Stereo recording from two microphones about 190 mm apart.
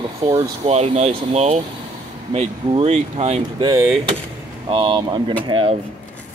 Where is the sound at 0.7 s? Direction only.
35° right (ahead or behind).